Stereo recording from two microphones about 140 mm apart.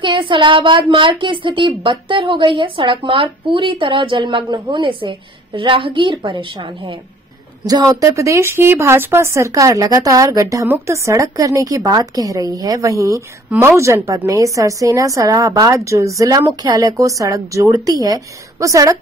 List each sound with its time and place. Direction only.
0.0 s speech: 35° right (ahead or behind)